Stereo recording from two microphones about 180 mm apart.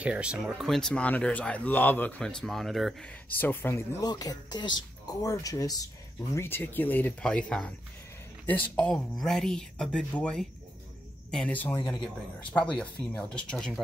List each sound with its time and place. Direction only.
0.0 s speech: 5° right (ahead or behind)
3.3 s speech: 10° left (ahead or behind)